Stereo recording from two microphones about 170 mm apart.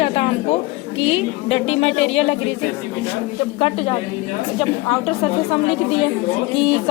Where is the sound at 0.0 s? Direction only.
35° left (ahead or behind).